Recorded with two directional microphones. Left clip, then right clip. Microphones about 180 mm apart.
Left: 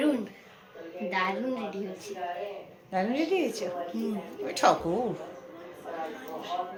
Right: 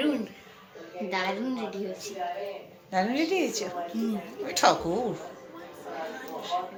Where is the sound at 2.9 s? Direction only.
10° right (ahead or behind).